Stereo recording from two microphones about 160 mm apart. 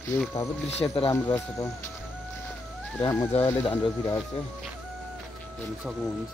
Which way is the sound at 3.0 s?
20° left (ahead or behind).